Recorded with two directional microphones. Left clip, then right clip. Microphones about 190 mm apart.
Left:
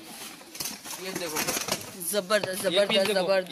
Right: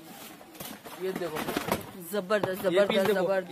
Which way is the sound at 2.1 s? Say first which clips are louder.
Left 2 dB; 10° right (ahead or behind).